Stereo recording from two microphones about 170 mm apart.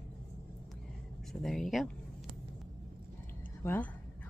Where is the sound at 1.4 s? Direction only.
Centre (ahead or behind).